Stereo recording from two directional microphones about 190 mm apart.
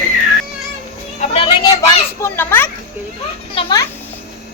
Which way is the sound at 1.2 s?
30° left (ahead or behind).